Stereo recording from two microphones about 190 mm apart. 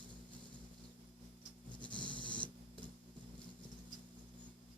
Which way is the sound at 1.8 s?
25° left (ahead or behind).